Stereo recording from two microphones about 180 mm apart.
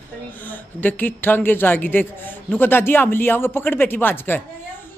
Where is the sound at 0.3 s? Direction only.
10° left (ahead or behind).